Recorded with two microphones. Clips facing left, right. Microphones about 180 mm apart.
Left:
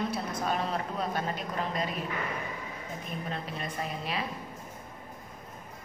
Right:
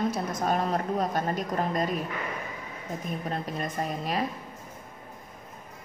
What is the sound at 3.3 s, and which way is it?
Speech, 45° right (ahead or behind).